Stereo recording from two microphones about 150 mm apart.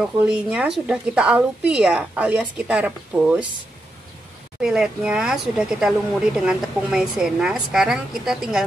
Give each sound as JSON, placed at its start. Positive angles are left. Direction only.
{"t": 0.0, "sound": "a woman's voice", "side_deg": -5}
{"t": 4.6, "sound": "speech", "side_deg": -5}